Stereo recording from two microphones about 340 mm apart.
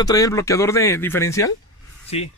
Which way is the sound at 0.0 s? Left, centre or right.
Centre.